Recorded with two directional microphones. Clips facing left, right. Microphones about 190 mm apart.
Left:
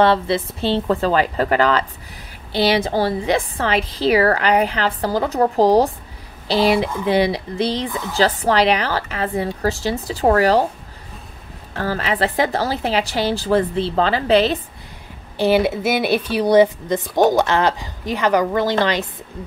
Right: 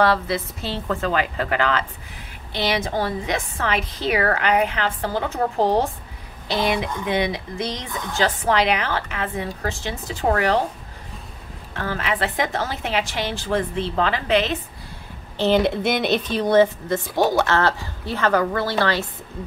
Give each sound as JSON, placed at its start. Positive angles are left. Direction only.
{"t": 0.0, "sound": "a woman's voice", "side_deg": 25}
{"t": 7.9, "sound": "speech", "side_deg": 5}
{"t": 8.2, "sound": "a woman's voice", "side_deg": 35}
{"t": 11.7, "sound": "a woman's voice", "side_deg": 35}
{"t": 15.3, "sound": "speech", "side_deg": 10}